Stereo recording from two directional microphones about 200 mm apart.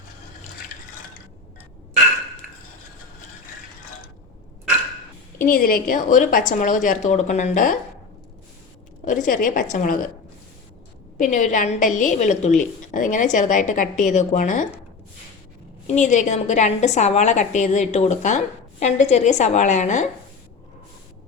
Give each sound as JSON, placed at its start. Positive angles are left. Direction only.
{"t": 5.4, "sound": "a woman's voice", "side_deg": 45}
{"t": 9.0, "sound": "a woman's voice", "side_deg": 40}
{"t": 11.2, "sound": "a woman's voice", "side_deg": 40}
{"t": 16.0, "sound": "a woman's voice", "side_deg": 35}